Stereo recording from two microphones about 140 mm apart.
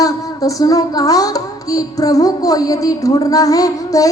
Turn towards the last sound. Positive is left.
turn(degrees=25)  # may be behind; listen again after turning